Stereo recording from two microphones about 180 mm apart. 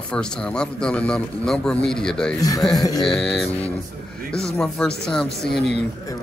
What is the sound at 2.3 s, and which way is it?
Speech, 20° left (ahead or behind).